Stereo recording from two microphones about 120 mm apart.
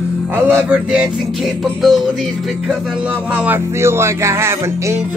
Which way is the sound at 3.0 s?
10° right (ahead or behind).